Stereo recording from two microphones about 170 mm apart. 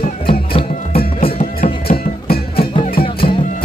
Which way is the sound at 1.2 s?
60° left (ahead or behind).